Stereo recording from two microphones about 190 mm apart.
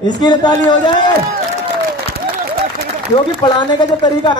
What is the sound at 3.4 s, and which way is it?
A man's voice, 25° left (ahead or behind).